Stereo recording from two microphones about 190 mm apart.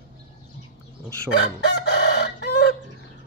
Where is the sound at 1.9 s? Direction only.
65° left (ahead or behind).